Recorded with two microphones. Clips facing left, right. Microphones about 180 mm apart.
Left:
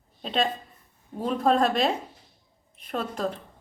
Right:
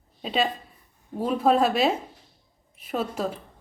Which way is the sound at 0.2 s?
5° right (ahead or behind).